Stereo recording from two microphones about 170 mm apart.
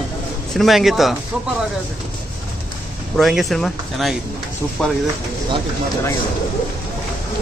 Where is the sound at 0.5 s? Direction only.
Centre (ahead or behind).